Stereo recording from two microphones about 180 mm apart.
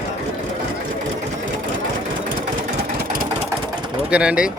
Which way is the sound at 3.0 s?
55° right (ahead or behind).